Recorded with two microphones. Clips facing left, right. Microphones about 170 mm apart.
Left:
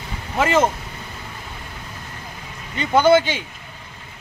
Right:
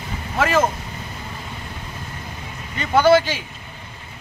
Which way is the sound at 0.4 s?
20° left (ahead or behind).